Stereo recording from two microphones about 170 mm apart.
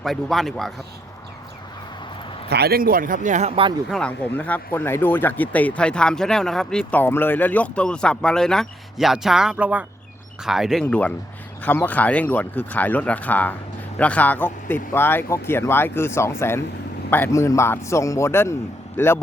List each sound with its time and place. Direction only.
0.0 s speech: centre (ahead or behind)
2.5 s speech: 70° right (ahead or behind); by 3.8 s 30° right (ahead or behind)
3.8 s speech: 5° left (ahead or behind)